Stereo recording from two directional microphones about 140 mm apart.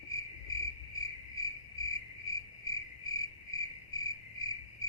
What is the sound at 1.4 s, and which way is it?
Cricket, 25° left (ahead or behind).